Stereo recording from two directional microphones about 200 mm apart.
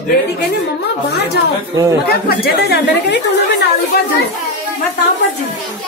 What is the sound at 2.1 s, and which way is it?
Speech, 50° left (ahead or behind).